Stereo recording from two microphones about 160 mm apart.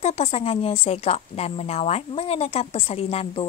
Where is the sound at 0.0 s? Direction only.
40° left (ahead or behind).